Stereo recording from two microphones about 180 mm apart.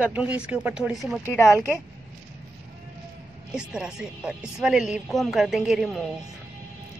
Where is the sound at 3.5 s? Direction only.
5° right (ahead or behind).